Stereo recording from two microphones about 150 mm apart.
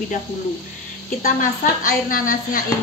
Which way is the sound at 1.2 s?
70° left (ahead or behind).